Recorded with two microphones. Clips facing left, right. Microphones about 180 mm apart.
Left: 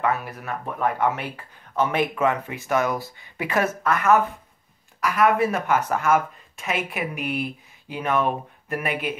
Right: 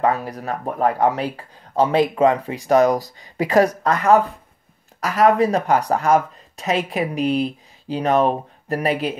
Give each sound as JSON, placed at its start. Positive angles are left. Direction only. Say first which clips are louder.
{"t": 0.0, "sound": "speech", "louder": "right 5 dB", "side_deg": -35}